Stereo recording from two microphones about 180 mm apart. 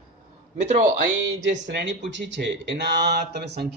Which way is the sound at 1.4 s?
85° right.